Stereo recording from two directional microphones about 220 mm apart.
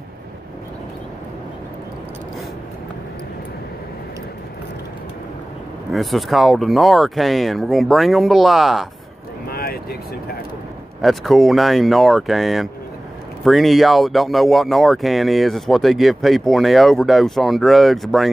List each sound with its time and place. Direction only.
5.9 s speech: centre (ahead or behind)
9.5 s a sound: 45° left (ahead or behind)
11.0 s speech: centre (ahead or behind)